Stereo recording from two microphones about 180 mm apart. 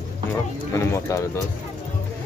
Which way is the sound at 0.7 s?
15° left (ahead or behind).